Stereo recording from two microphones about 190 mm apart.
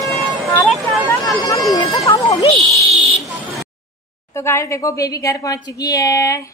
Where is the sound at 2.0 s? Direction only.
20° left (ahead or behind).